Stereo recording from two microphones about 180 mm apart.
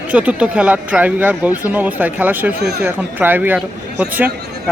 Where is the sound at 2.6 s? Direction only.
65° right (ahead or behind).